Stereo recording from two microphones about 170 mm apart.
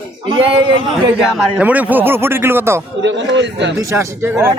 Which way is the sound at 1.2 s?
10° right (ahead or behind).